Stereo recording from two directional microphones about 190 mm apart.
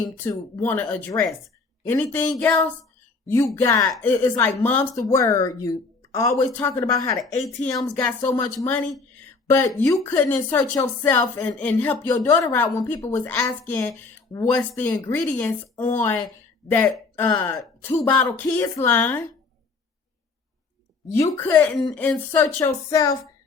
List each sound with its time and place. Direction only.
0.2 s a woman's voice: 20° left (ahead or behind)
7.2 s a woman's voice: centre (ahead or behind)
21.2 s a woman's voice: 15° left (ahead or behind)